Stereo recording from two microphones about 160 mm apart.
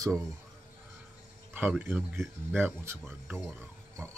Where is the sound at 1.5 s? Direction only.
10° right (ahead or behind).